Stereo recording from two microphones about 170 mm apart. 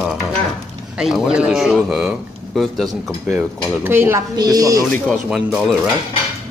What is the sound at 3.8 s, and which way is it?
A woman's voice, 15° right (ahead or behind).